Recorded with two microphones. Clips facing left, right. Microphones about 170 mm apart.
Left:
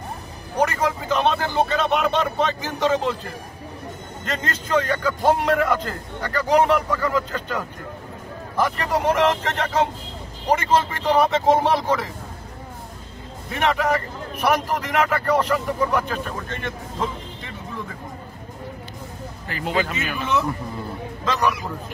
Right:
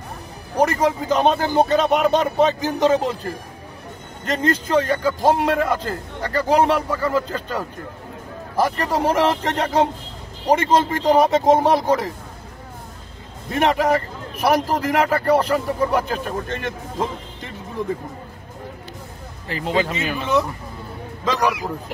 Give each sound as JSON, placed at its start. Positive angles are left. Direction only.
{"t": 0.6, "sound": "a man's voice", "side_deg": -35}
{"t": 4.3, "sound": "a man's voice", "side_deg": -35}
{"t": 13.5, "sound": "a man's voice", "side_deg": -40}
{"t": 19.4, "sound": "speech", "side_deg": -30}